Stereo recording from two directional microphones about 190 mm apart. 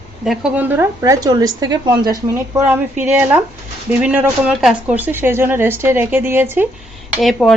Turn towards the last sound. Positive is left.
turn(degrees=0)  # may be behind; listen again after turning